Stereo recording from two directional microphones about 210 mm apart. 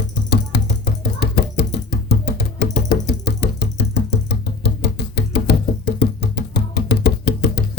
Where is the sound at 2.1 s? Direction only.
50° left (ahead or behind).